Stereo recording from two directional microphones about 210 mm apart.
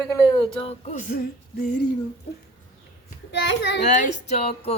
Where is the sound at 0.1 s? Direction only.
20° left (ahead or behind); by 1.7 s 40° left (ahead or behind).